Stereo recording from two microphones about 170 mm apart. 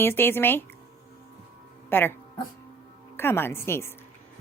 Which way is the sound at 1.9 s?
10° left (ahead or behind).